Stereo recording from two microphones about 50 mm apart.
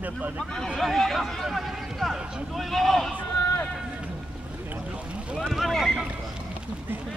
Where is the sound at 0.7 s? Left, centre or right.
Centre.